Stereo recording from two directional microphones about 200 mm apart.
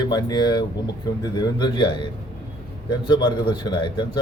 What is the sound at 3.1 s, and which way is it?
A man's voice, 25° left (ahead or behind).